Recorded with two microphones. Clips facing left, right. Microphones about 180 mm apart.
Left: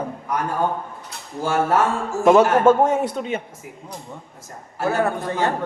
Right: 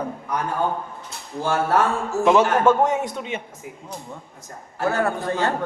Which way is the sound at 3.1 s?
40° left (ahead or behind).